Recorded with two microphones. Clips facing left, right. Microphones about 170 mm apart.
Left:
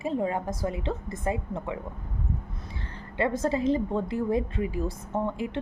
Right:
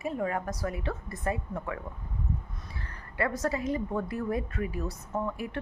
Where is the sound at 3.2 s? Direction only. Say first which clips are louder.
Left 4 dB; 25° left (ahead or behind).